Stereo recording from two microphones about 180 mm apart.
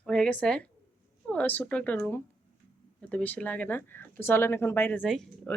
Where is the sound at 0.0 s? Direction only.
5° left (ahead or behind).